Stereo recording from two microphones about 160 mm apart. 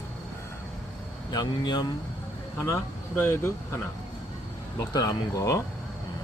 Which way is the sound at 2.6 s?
15° left (ahead or behind).